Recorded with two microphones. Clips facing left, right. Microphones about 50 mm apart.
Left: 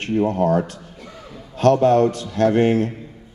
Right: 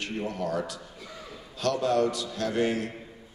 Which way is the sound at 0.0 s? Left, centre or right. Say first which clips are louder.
Left 12 dB; left.